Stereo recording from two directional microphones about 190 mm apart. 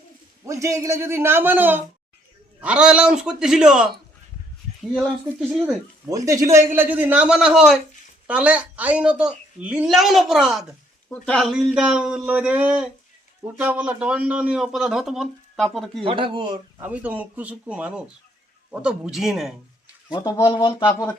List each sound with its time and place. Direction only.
0.4 s a man's voice: 15° right (ahead or behind); by 5.5 s 5° left (ahead or behind)
6.1 s a man's voice: 15° right (ahead or behind); by 16.0 s centre (ahead or behind)
16.0 s speech: 25° right (ahead or behind)
16.8 s a man's voice: 5° right (ahead or behind)
20.1 s speech: 20° left (ahead or behind)